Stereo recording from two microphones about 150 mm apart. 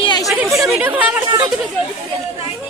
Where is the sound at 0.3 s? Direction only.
Centre (ahead or behind).